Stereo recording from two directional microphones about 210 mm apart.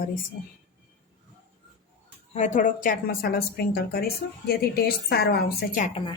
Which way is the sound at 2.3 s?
35° left (ahead or behind).